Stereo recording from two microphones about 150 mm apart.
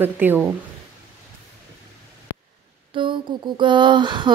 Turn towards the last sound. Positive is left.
turn(degrees=-30)  # may be behind; listen again after turning